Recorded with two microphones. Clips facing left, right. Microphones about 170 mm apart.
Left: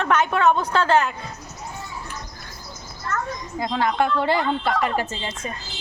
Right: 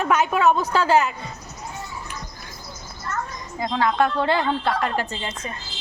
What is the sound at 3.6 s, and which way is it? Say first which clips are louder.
A woman's voice: right 1 dB; 15° left (ahead or behind).